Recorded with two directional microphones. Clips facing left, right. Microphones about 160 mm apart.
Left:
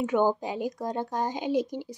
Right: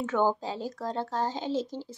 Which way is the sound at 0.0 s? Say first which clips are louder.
Left 2 dB; 15° left (ahead or behind).